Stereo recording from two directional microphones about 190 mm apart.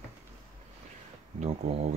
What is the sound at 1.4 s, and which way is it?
Speech, 35° right (ahead or behind).